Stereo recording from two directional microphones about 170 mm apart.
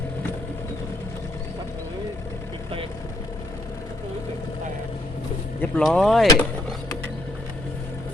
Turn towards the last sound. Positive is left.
turn(degrees=0)  # may be behind; listen again after turning